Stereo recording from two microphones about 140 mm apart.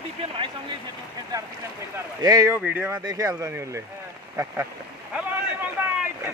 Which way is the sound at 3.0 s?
25° right (ahead or behind).